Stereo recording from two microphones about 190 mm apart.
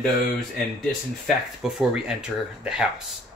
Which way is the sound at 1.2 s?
5° right (ahead or behind).